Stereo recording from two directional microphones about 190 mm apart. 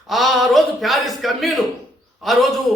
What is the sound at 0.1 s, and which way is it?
A man's voice, centre (ahead or behind).